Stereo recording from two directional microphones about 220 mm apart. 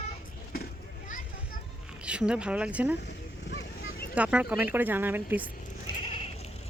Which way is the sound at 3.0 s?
50° left (ahead or behind).